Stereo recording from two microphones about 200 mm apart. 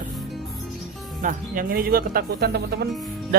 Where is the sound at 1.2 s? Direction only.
45° right (ahead or behind).